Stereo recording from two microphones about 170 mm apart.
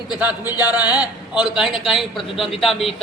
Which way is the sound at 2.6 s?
Centre (ahead or behind).